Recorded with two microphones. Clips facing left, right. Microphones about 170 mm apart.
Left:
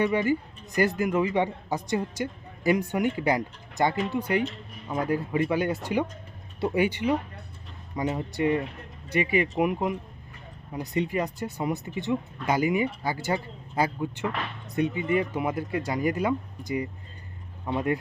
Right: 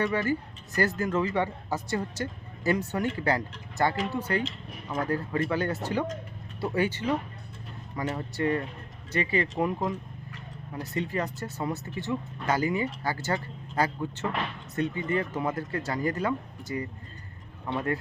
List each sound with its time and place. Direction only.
0.0 s speech: 15° left (ahead or behind)